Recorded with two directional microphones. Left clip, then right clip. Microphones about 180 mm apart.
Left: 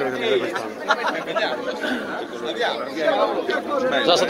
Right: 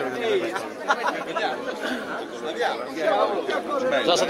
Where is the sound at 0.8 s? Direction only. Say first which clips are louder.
Left 2 dB; 30° right (ahead or behind).